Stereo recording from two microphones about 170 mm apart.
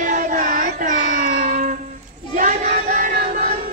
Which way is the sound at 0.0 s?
50° right (ahead or behind).